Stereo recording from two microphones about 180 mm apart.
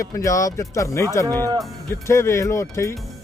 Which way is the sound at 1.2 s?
20° right (ahead or behind).